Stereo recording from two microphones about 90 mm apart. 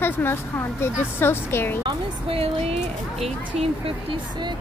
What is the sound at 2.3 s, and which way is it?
Speech, 90° right.